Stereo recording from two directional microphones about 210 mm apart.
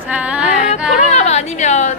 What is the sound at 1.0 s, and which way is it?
Speech, 30° left (ahead or behind).